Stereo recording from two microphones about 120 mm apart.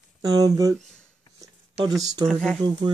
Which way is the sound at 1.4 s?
30° right (ahead or behind).